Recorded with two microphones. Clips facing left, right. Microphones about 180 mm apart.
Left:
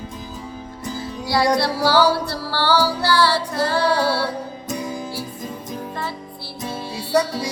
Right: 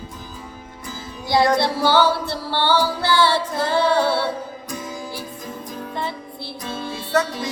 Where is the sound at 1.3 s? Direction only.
20° right (ahead or behind).